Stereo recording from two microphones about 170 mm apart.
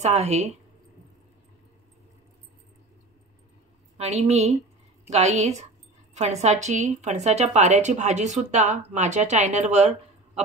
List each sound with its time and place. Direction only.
0.0 s a woman's voice: 40° right (ahead or behind)
4.0 s a woman's voice: 40° right (ahead or behind)